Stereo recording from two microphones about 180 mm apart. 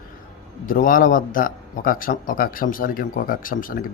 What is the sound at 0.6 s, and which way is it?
A man's voice, 50° left (ahead or behind).